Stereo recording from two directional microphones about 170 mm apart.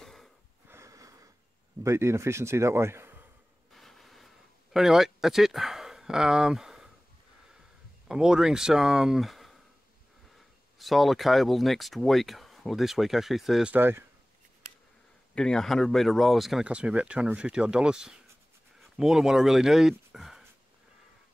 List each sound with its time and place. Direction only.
0.0 s wheeze: centre (ahead or behind)
0.7 s snort: 15° right (ahead or behind)
1.8 s a man's voice: 15° right (ahead or behind)
3.7 s vehicle: centre (ahead or behind)
4.7 s speech: centre (ahead or behind)
8.1 s speech: 5° right (ahead or behind)
10.8 s speech: centre (ahead or behind)
15.3 s speech: 5° left (ahead or behind)